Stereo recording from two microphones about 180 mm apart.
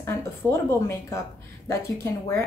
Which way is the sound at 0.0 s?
15° left (ahead or behind).